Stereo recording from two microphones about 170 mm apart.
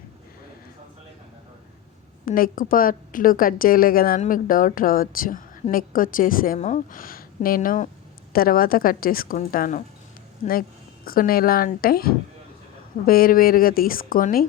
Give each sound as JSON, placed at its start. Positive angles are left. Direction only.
{"t": 2.2, "sound": "a woman's voice", "side_deg": 55}